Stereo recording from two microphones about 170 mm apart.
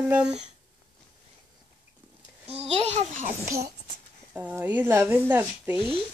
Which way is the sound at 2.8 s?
45° right (ahead or behind).